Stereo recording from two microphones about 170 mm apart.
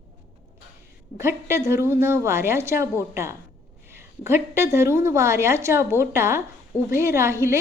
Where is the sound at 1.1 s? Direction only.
15° right (ahead or behind).